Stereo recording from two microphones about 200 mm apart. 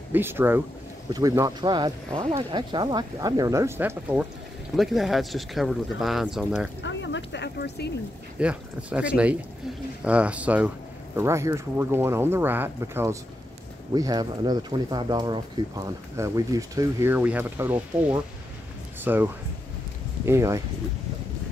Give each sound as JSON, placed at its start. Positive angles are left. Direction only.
{"t": 0.1, "sound": "speech", "side_deg": -10}
{"t": 6.8, "sound": "speech", "side_deg": 65}
{"t": 8.4, "sound": "speech", "side_deg": -5}